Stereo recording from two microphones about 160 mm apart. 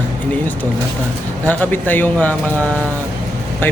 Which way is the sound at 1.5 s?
10° left (ahead or behind).